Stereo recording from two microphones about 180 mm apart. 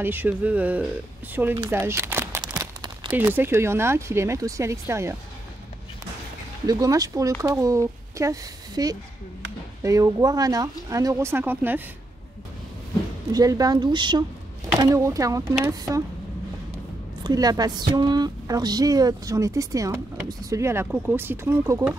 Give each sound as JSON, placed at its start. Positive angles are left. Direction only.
{"t": 0.0, "sound": "speech", "side_deg": -10}
{"t": 2.6, "sound": "a sound", "side_deg": -20}
{"t": 3.2, "sound": "speech", "side_deg": -10}
{"t": 6.6, "sound": "a woman's voice", "side_deg": -20}
{"t": 13.3, "sound": "a woman's voice", "side_deg": -20}
{"t": 17.2, "sound": "a woman's voice", "side_deg": -20}